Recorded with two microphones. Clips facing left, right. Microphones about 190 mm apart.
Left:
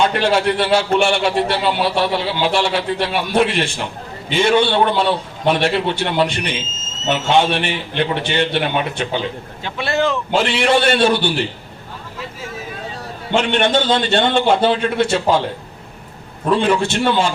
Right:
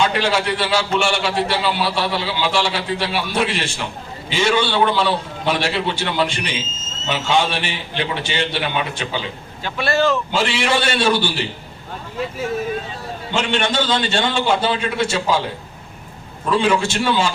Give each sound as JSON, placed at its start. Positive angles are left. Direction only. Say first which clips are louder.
{"t": 0.1, "sound": "a man's voice", "louder": "left 3 dB", "side_deg": 55}
{"t": 9.6, "sound": "speech", "louder": "right 1 dB", "side_deg": 20}
{"t": 10.3, "sound": "a man's voice", "louder": "left 4 dB", "side_deg": 55}
{"t": 13.3, "sound": "a man's voice", "louder": "left 4 dB", "side_deg": 55}
{"t": 16.5, "sound": "a man's voice", "louder": "left 2 dB", "side_deg": 55}